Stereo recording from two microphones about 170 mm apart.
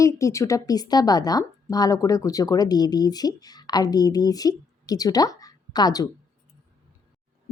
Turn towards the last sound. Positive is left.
turn(degrees=25)  # may be behind; listen again after turning